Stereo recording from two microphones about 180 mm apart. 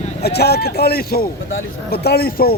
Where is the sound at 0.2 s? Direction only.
65° left (ahead or behind).